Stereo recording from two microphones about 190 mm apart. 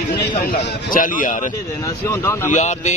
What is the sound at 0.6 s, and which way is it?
Speech, 45° left (ahead or behind).